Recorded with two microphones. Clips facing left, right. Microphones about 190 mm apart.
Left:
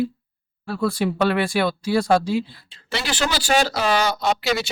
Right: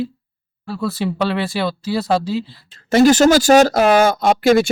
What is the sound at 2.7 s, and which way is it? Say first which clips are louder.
Speech: right 16 dB; 45° right (ahead or behind).